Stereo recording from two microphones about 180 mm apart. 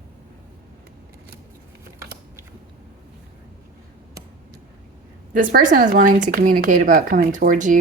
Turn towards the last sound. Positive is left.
turn(degrees=-45)  # may be behind; listen again after turning